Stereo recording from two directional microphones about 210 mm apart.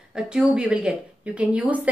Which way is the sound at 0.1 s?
5° right (ahead or behind).